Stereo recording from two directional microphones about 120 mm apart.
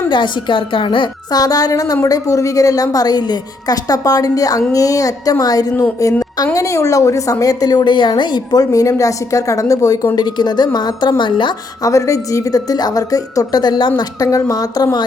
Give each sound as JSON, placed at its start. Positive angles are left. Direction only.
{"t": 0.1, "sound": "a woman's voice", "side_deg": 40}
{"t": 11.9, "sound": "a woman's voice", "side_deg": 25}
{"t": 14.3, "sound": "a woman's voice", "side_deg": 25}